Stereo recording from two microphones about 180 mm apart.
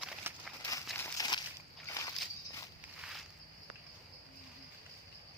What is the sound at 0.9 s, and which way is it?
Walk, 20° left (ahead or behind).